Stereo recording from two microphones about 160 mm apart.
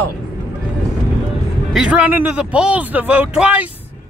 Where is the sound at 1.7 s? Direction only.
5° right (ahead or behind).